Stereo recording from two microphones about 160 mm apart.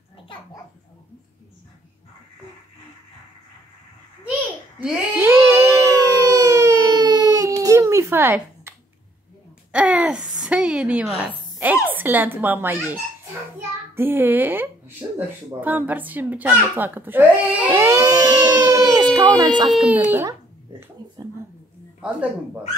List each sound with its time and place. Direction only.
4.7 s babbling: 10° right (ahead or behind)
5.3 s a sound: 20° right (ahead or behind)
11.6 s speech: 10° right (ahead or behind)
13.9 s speech: 15° right (ahead or behind)
19.7 s speech: 5° right (ahead or behind)
22.0 s speech: 10° right (ahead or behind)